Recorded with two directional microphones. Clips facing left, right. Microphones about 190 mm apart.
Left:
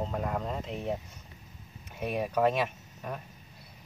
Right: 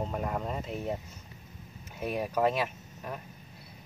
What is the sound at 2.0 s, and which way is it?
Speech, centre (ahead or behind).